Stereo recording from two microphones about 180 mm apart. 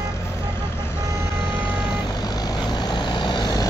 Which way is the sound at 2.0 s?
20° left (ahead or behind).